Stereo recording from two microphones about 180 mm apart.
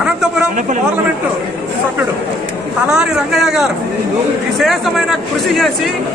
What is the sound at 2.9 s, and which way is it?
Speech, 5° right (ahead or behind).